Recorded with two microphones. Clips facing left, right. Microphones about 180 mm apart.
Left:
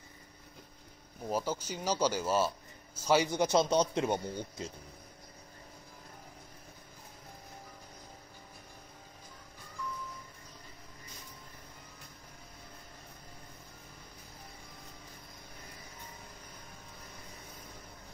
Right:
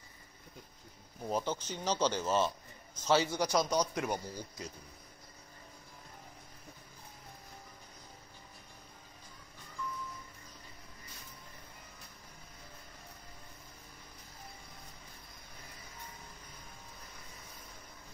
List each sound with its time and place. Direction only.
1.2 s a man's voice: 5° left (ahead or behind); by 4.7 s 25° left (ahead or behind)